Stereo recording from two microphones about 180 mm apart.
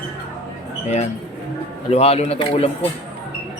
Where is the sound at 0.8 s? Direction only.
40° left (ahead or behind).